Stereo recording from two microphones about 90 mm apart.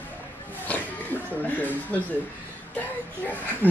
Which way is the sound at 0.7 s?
20° left (ahead or behind).